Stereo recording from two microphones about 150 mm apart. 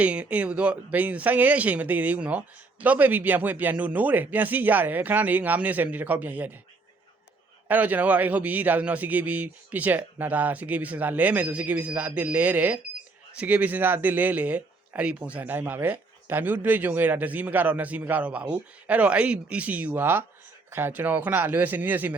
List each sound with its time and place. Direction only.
0.0 s speech: 10° right (ahead or behind)
7.7 s speech: 10° right (ahead or behind)